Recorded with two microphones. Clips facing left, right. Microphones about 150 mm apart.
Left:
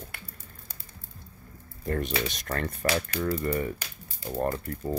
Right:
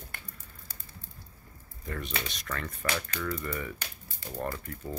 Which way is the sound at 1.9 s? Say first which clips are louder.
Left 8 dB; 45° left (ahead or behind).